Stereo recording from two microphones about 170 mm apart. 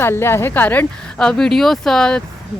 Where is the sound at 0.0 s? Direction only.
15° left (ahead or behind).